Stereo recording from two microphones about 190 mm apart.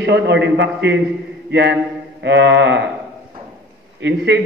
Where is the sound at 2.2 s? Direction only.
65° right (ahead or behind).